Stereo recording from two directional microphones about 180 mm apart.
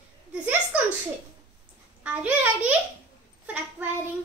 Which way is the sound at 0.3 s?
5° right (ahead or behind).